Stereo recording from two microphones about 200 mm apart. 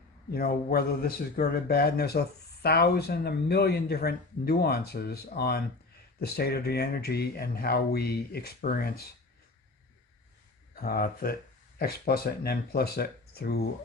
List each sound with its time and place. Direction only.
0.3 s a man's voice: 50° left (ahead or behind)
10.8 s a man's voice: 50° left (ahead or behind)